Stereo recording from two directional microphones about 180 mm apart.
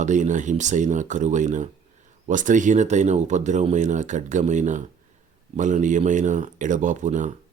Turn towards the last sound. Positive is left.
turn(degrees=-45)  # may be behind; listen again after turning